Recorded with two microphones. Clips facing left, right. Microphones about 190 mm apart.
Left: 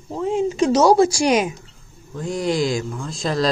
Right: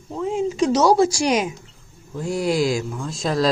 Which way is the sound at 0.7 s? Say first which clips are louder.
Left 2 dB; 50° left (ahead or behind).